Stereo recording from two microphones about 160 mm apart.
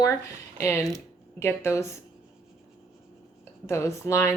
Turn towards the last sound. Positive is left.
turn(degrees=15)  # may be behind; listen again after turning